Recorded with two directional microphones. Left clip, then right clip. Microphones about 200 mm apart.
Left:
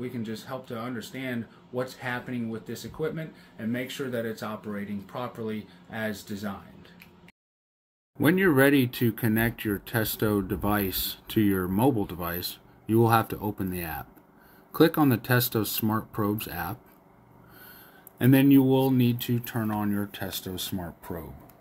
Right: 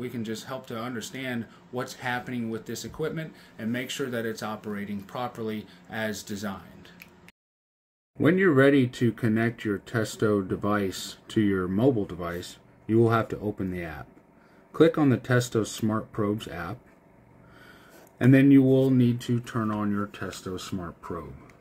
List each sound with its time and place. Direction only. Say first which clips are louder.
0.0 s speech: right 1 dB; 20° right (ahead or behind)
8.2 s speech: right 1 dB; 5° left (ahead or behind)
18.2 s speech: right 1 dB; 5° left (ahead or behind)